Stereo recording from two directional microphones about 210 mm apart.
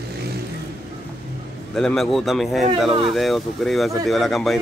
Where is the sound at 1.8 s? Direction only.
Centre (ahead or behind).